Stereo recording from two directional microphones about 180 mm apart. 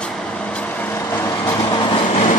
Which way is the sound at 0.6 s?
10° left (ahead or behind).